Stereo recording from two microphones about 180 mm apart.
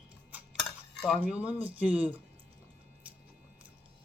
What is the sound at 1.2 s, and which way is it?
Speech, 10° right (ahead or behind).